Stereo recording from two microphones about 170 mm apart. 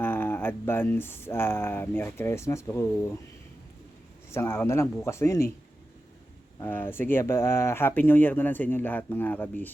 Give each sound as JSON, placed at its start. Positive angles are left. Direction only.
{"t": 0.0, "sound": "speech", "side_deg": 10}
{"t": 4.3, "sound": "speech", "side_deg": 15}
{"t": 6.6, "sound": "speech", "side_deg": 10}